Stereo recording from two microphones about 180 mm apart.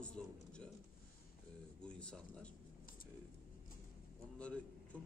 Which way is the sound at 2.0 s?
5° left (ahead or behind).